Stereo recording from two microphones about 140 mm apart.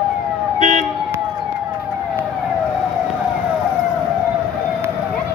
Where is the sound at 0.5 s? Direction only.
60° right (ahead or behind).